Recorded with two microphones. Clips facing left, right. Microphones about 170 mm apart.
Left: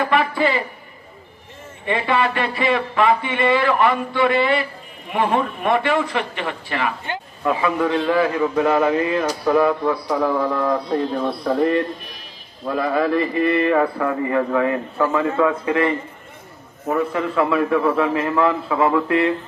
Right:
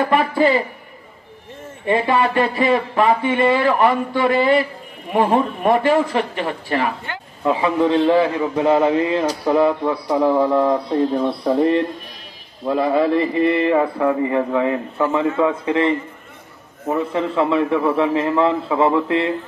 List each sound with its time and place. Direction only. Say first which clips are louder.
0.1 s a man's voice: right 3 dB; 40° right (ahead or behind)
1.9 s a man's voice: right 3 dB; 40° right (ahead or behind)
7.1 s a sound: left 3 dB; 20° left (ahead or behind)
7.4 s a man's voice: right 3 dB; 25° right (ahead or behind)